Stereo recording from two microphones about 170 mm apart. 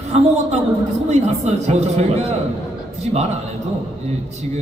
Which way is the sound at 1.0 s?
40° right (ahead or behind).